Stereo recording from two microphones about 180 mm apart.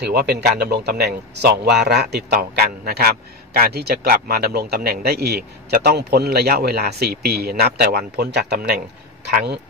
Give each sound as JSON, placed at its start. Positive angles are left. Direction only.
{"t": 0.0, "sound": "a man's voice", "side_deg": -65}